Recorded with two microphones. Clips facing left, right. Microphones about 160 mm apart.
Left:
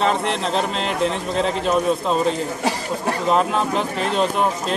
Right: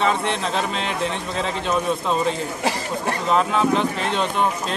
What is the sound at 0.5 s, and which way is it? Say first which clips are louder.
Speech: left 2 dB; 35° left (ahead or behind).